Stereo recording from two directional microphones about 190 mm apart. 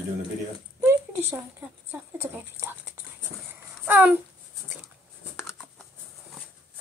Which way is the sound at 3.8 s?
10° right (ahead or behind).